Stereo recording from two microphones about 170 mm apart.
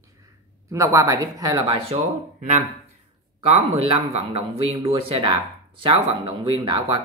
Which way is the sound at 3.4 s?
35° right (ahead or behind).